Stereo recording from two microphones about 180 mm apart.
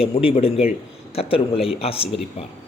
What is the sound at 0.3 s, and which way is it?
Speech, 30° left (ahead or behind).